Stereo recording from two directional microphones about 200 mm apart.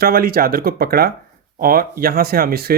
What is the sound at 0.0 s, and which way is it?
Speech, 50° right (ahead or behind).